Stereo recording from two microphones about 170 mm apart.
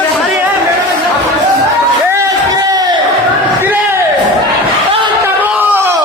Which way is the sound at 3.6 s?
10° right (ahead or behind).